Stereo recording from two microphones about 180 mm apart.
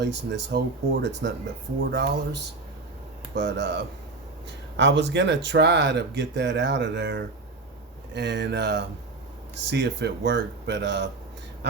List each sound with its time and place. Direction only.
0.0 s speech: 70° right (ahead or behind)
4.8 s speech: 90° right